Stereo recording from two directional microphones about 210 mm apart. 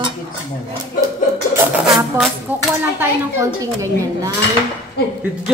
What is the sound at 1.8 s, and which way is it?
Speech, centre (ahead or behind).